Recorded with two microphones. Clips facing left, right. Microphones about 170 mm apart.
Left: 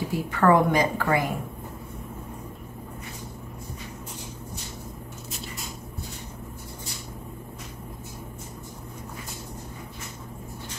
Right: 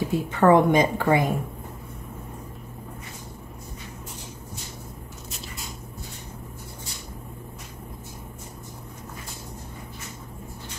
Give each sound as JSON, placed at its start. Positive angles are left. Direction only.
{"t": 0.1, "sound": "a woman's voice", "side_deg": -20}